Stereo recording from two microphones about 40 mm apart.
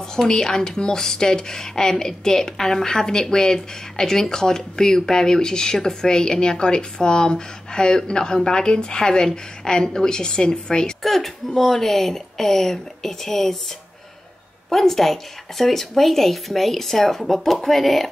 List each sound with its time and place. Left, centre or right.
0.1 s a woman's voice: centre
11.0 s a woman's voice: centre
14.7 s speech: centre